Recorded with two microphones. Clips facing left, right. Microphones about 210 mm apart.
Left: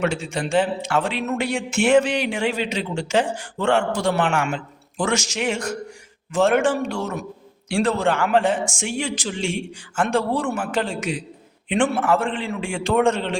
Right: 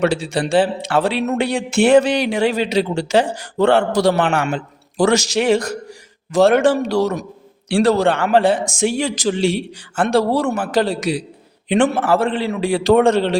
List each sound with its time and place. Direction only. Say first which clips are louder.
0.0 s speech: right 5 dB; 35° right (ahead or behind)